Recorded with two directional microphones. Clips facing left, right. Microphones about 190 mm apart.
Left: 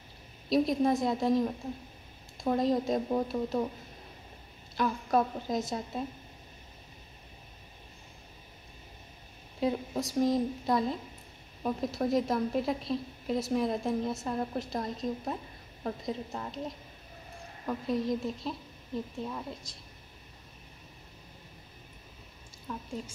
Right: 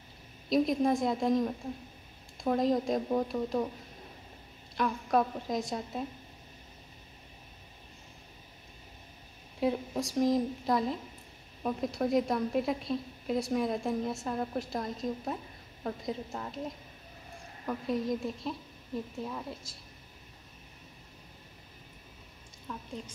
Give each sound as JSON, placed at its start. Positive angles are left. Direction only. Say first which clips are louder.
{"t": 0.5, "sound": "a woman's voice", "louder": "left 1 dB", "side_deg": 0}
{"t": 4.7, "sound": "a woman's voice", "louder": "left 1 dB", "side_deg": 0}
{"t": 9.6, "sound": "a woman's voice", "louder": "even", "side_deg": 0}